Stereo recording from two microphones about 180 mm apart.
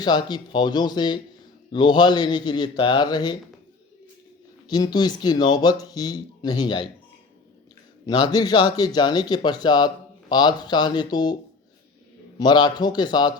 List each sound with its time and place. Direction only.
0.0 s speech: 25° left (ahead or behind)
4.7 s speech: 25° left (ahead or behind)
8.0 s speech: 25° left (ahead or behind)
12.4 s speech: 25° left (ahead or behind)